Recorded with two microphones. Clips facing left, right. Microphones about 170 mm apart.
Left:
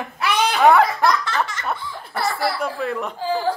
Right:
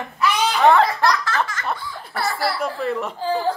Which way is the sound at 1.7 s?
Centre (ahead or behind).